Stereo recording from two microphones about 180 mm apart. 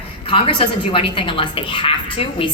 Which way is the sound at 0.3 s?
30° left (ahead or behind).